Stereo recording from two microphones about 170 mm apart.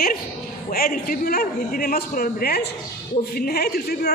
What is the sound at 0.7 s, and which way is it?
A man's voice, 60° left (ahead or behind).